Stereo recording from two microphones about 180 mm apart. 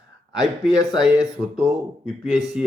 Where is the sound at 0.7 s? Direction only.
20° left (ahead or behind).